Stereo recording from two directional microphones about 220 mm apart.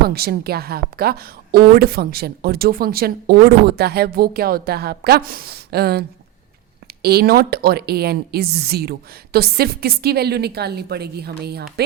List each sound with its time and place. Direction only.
0.1 s speech: 45° right (ahead or behind)